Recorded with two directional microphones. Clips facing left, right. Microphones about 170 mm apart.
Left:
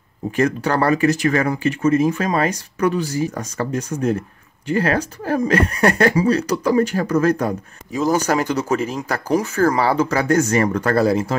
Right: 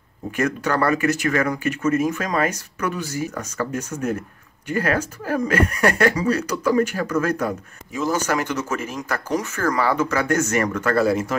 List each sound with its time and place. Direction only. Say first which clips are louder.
0.4 s speech: left 3 dB; 30° left (ahead or behind)